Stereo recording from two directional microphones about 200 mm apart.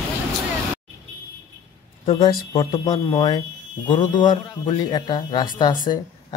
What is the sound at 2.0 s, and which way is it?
A man's voice, 25° left (ahead or behind).